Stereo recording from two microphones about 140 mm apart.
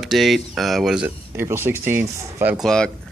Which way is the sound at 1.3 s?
15° right (ahead or behind).